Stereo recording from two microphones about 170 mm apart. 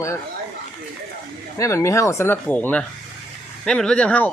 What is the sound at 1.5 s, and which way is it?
Speech, 15° left (ahead or behind).